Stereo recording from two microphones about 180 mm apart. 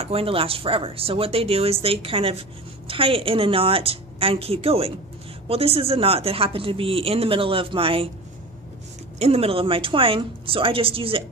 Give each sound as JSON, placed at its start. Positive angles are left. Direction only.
{"t": 0.0, "sound": "speech", "side_deg": -30}
{"t": 9.2, "sound": "speech", "side_deg": -35}